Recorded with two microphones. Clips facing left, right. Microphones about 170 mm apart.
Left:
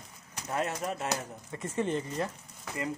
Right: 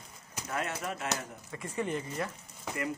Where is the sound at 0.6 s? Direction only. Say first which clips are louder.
Left 3 dB; 35° left (ahead or behind).